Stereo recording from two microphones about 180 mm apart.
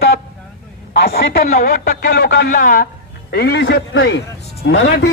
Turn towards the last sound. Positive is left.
turn(degrees=65)  # may be behind; listen again after turning